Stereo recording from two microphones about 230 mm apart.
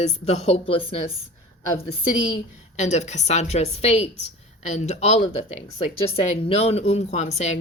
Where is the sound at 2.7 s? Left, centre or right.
Left.